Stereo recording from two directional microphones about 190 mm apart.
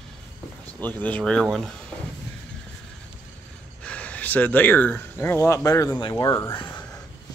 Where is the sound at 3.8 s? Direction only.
5° left (ahead or behind).